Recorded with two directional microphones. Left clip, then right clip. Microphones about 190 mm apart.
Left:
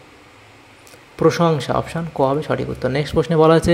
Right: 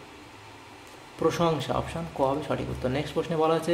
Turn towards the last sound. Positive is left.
turn(degrees=40)  # may be behind; listen again after turning